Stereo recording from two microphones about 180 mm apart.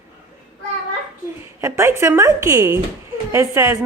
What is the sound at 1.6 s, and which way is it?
A woman's voice, 15° right (ahead or behind).